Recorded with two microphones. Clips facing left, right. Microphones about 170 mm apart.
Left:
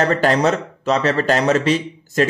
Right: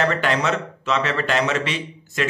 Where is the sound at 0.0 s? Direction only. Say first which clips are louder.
Left 5 dB; 40° left (ahead or behind).